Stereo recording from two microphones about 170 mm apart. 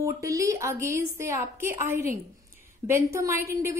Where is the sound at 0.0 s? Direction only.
20° right (ahead or behind).